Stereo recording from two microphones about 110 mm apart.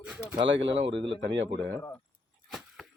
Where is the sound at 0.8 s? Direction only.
50° right (ahead or behind).